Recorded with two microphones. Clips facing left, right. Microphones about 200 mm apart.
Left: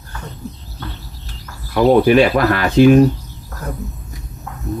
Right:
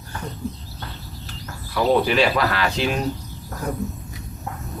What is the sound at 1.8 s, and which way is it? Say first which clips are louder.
Speech: left 7 dB; 50° left (ahead or behind).